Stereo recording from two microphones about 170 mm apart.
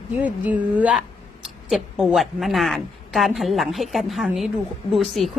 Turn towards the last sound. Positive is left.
turn(degrees=0)  # may be behind; listen again after turning